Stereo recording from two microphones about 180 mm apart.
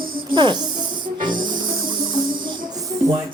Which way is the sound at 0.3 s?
25° right (ahead or behind).